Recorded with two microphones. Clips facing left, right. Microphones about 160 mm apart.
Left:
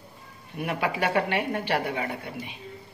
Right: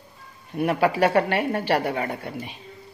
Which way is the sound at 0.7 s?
40° right (ahead or behind).